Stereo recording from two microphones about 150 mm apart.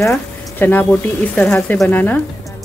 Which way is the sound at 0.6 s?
10° left (ahead or behind).